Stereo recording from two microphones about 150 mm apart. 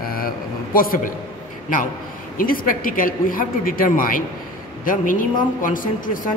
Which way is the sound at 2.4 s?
70° left (ahead or behind).